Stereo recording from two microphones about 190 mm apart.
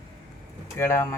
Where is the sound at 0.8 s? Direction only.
15° left (ahead or behind).